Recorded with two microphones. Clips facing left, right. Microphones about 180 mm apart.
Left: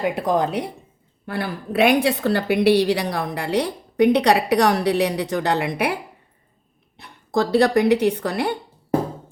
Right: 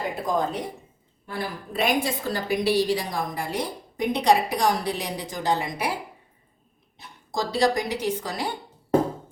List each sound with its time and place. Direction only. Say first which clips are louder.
0.1 s a woman's voice: left 5 dB; 70° left (ahead or behind)